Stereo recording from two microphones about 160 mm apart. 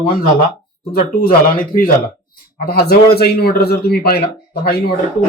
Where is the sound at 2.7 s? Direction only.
80° left.